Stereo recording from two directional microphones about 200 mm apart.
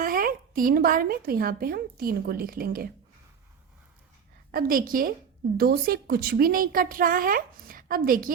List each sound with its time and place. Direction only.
0.0 s a woman's voice: 45° right (ahead or behind)
4.5 s a woman's voice: 45° right (ahead or behind)